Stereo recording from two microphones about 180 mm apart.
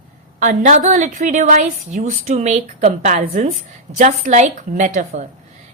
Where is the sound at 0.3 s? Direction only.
45° right (ahead or behind).